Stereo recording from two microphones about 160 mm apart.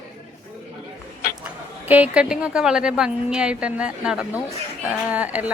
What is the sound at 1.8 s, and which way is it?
A woman's voice, 10° right (ahead or behind).